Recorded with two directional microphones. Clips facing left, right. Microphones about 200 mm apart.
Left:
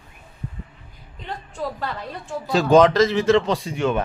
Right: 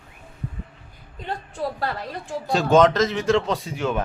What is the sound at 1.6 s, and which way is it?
Speech, 35° right (ahead or behind).